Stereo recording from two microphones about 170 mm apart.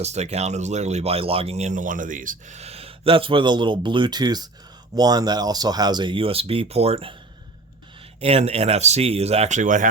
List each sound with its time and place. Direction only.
0.0 s speech: 40° right (ahead or behind)
8.2 s speech: 35° right (ahead or behind)